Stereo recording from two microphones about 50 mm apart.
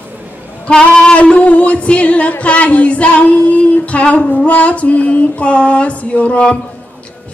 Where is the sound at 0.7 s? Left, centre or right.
Centre.